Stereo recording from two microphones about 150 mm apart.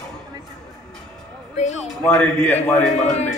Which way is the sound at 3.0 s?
50° left (ahead or behind).